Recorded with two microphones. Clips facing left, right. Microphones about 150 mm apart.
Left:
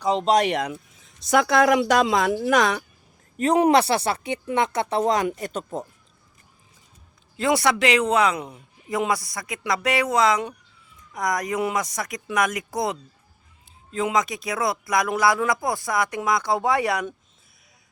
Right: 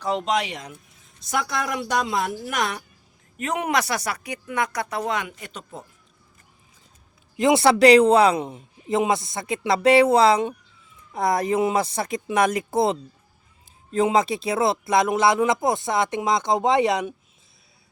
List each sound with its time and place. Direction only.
0.0 s speech: 20° left (ahead or behind)
0.3 s speech: 45° left (ahead or behind)
0.5 s speech: 80° left
1.2 s speech: 90° left
3.3 s speech: 35° left (ahead or behind)
7.3 s a man's voice: 20° right (ahead or behind)